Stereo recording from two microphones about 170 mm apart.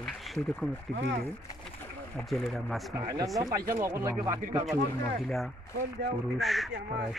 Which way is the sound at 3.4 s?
20° right (ahead or behind).